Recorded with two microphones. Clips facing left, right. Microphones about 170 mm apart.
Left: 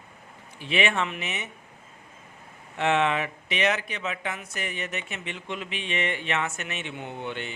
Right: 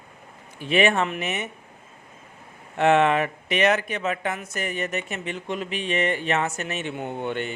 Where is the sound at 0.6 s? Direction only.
45° right (ahead or behind).